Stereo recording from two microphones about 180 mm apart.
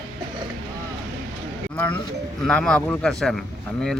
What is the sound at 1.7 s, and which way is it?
A man's voice, 10° left (ahead or behind).